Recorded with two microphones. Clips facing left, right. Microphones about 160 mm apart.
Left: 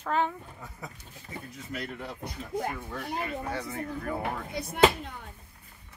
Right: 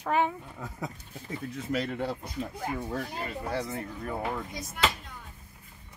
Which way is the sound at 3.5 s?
30° right (ahead or behind).